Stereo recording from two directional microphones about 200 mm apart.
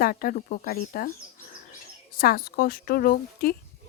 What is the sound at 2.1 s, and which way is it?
Speech, 45° left (ahead or behind).